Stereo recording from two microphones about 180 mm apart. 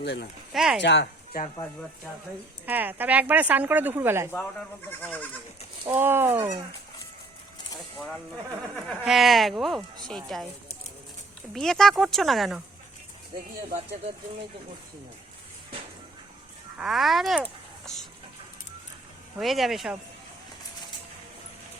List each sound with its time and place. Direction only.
0.0 s speech: 70° left (ahead or behind)
0.5 s speech: 5° right (ahead or behind)
0.8 s speech: 75° left (ahead or behind)
2.6 s speech: 10° right (ahead or behind)
5.9 s speech: 10° right (ahead or behind)
8.7 s speech: centre (ahead or behind)
11.5 s speech: centre (ahead or behind)
16.7 s speech: centre (ahead or behind)
19.4 s speech: centre (ahead or behind)